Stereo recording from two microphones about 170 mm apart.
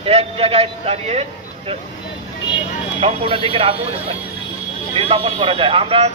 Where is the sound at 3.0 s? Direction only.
30° right (ahead or behind).